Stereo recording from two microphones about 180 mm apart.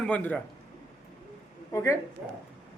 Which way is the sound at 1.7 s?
15° left (ahead or behind).